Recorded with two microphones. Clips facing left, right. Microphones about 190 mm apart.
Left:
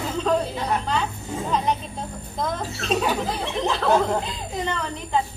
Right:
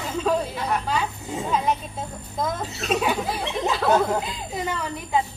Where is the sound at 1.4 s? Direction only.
5° right (ahead or behind).